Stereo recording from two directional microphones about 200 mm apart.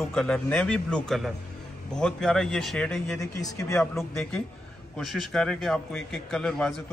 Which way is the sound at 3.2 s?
15° left (ahead or behind).